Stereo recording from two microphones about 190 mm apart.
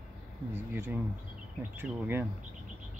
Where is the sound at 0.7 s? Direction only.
10° right (ahead or behind).